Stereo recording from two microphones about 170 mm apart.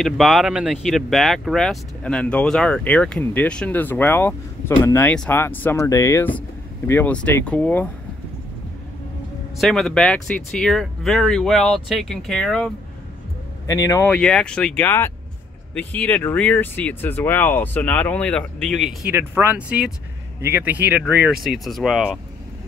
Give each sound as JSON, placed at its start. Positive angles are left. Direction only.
{"t": 0.0, "sound": "speech", "side_deg": 0}
{"t": 9.6, "sound": "speech", "side_deg": 0}
{"t": 13.7, "sound": "speech", "side_deg": 20}
{"t": 14.1, "sound": "speech", "side_deg": 5}
{"t": 19.1, "sound": "speech", "side_deg": -10}